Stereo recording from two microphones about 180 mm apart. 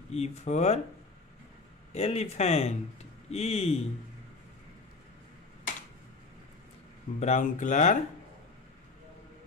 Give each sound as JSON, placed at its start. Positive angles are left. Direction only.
{"t": 0.1, "sound": "speech", "side_deg": 35}
{"t": 1.9, "sound": "speech", "side_deg": 35}
{"t": 7.2, "sound": "speech", "side_deg": 40}